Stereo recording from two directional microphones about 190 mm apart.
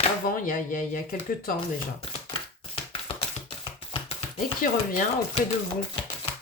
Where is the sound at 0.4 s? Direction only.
45° left (ahead or behind).